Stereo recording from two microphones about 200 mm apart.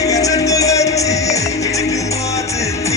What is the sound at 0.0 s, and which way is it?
Music, 15° left (ahead or behind).